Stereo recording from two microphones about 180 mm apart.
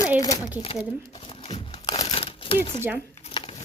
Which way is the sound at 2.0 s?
30° left (ahead or behind).